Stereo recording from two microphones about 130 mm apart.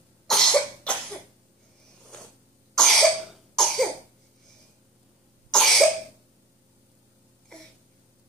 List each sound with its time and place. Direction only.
0.3 s cough: 5° left (ahead or behind)
2.7 s cough: 5° left (ahead or behind)
5.5 s cough: 5° left (ahead or behind)